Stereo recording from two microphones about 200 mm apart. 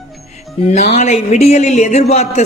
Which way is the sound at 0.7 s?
35° left (ahead or behind).